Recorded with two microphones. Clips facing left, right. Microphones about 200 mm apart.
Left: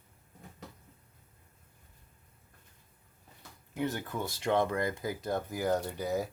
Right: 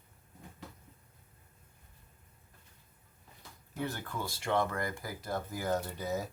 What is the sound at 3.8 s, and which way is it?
Speech, 20° left (ahead or behind).